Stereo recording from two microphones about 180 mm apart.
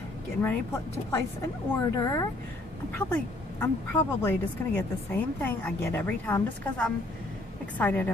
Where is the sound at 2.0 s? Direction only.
20° left (ahead or behind).